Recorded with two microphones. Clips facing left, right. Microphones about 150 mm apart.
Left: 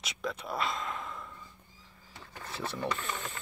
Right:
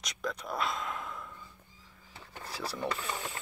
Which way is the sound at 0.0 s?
5° left (ahead or behind).